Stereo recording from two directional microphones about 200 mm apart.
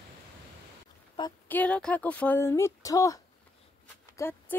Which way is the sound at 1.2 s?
25° left (ahead or behind).